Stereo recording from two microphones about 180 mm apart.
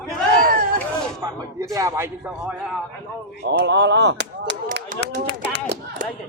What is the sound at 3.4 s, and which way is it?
A man's voice, 75° right (ahead or behind).